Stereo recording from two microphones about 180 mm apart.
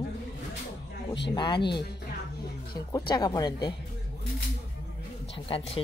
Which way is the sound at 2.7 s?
20° left (ahead or behind).